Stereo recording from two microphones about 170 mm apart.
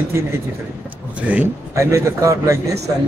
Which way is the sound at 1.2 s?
10° right (ahead or behind).